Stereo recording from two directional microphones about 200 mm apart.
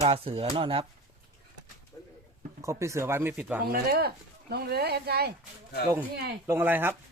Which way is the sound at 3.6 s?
50° right (ahead or behind).